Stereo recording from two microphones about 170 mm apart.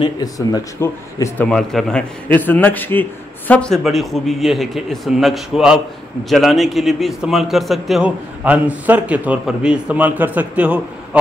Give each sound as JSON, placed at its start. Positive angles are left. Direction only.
{"t": 0.0, "sound": "a man's voice", "side_deg": 20}
{"t": 1.5, "sound": "a man's voice", "side_deg": 0}